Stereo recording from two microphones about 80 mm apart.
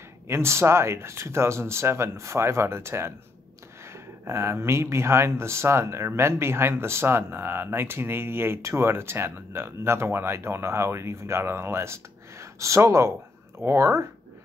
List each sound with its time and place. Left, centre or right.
0.3 s speech: right